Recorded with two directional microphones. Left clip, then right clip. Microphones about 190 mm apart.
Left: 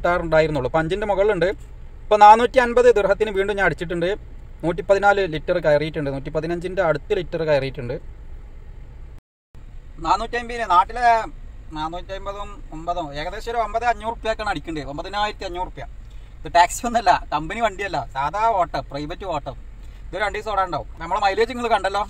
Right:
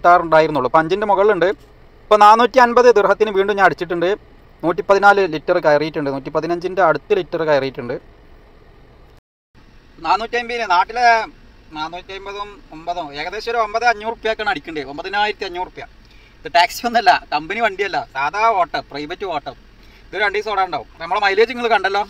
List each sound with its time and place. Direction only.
0.0 s a man's voice: centre (ahead or behind)
10.0 s a man's voice: 15° left (ahead or behind)
12.8 s a man's voice: 15° left (ahead or behind)